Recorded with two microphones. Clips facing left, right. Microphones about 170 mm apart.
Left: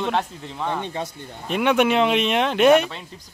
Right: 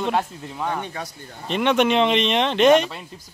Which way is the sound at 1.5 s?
10° left (ahead or behind).